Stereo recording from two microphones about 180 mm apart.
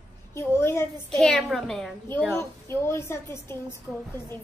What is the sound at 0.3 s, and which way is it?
A woman's voice, 15° left (ahead or behind).